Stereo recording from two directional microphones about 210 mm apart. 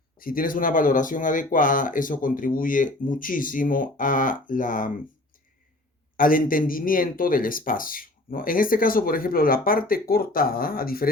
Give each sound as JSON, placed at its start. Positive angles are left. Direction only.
{"t": 0.2, "sound": "speech", "side_deg": 40}
{"t": 6.1, "sound": "speech", "side_deg": 40}